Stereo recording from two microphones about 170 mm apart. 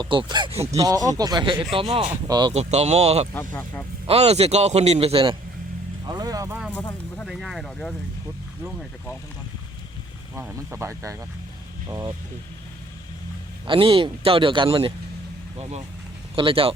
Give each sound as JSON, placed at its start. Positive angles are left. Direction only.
{"t": 0.0, "sound": "speech", "side_deg": -25}
{"t": 0.8, "sound": "a man's voice", "side_deg": -20}
{"t": 2.2, "sound": "speech", "side_deg": -25}
{"t": 2.5, "sound": "a man's voice", "side_deg": -40}
{"t": 3.3, "sound": "speech", "side_deg": 15}
{"t": 4.0, "sound": "a man's voice", "side_deg": -35}
{"t": 6.1, "sound": "speech", "side_deg": -20}
{"t": 7.3, "sound": "speech", "side_deg": 0}
{"t": 10.3, "sound": "speech", "side_deg": -15}
{"t": 13.7, "sound": "a man's voice", "side_deg": -30}
{"t": 16.3, "sound": "a man's voice", "side_deg": -30}